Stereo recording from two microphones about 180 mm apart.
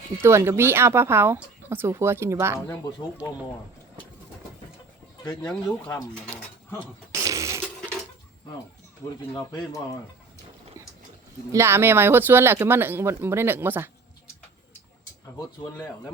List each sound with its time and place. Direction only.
0.2 s speech: 15° right (ahead or behind)
6.2 s pigeon: 5° left (ahead or behind)
7.1 s a sound: 15° right (ahead or behind)
11.5 s speech: 15° right (ahead or behind)